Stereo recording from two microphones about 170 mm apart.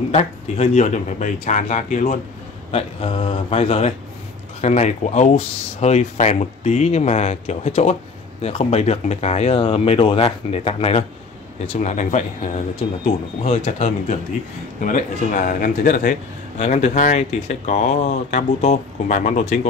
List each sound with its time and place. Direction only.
0.1 s speech: 40° left (ahead or behind)
2.7 s speech: 35° left (ahead or behind)
13.5 s speech: 35° left (ahead or behind)
14.8 s speech: 50° left (ahead or behind)
16.5 s speech: 40° left (ahead or behind)